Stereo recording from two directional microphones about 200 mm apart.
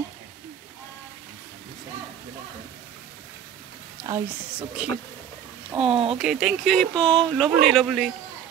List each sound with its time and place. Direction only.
4.1 s speech: 5° right (ahead or behind)
5.9 s speech: 25° right (ahead or behind)
6.1 s speech: centre (ahead or behind)